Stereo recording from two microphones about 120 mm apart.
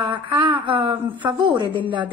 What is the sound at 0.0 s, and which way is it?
A woman's voice, 45° right (ahead or behind).